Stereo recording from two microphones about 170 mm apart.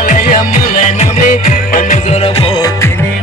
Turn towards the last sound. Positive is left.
turn(degrees=35)  # may be behind; listen again after turning